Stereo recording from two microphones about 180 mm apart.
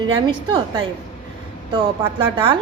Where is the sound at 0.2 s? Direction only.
25° right (ahead or behind).